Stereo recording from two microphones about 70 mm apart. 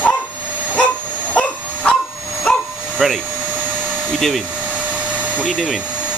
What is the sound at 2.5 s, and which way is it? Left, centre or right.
Bow-wow, centre.